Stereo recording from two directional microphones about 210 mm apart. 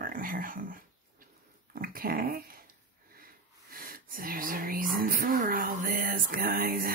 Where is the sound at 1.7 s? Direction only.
45° right (ahead or behind).